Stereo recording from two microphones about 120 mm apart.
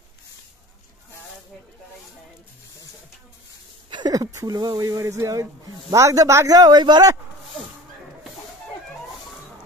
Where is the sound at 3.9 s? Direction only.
35° right (ahead or behind).